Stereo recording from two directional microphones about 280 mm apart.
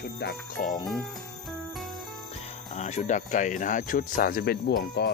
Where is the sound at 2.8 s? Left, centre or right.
Left.